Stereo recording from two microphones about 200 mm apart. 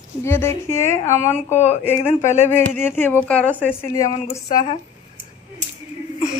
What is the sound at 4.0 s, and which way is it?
Speech, 35° left (ahead or behind).